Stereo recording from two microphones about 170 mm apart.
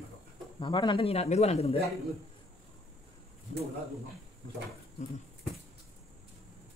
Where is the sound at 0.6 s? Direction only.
30° left (ahead or behind).